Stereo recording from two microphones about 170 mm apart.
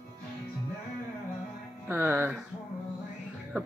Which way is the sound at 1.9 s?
10° right (ahead or behind).